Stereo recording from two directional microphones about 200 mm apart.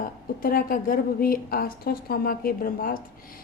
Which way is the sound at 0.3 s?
45° left (ahead or behind).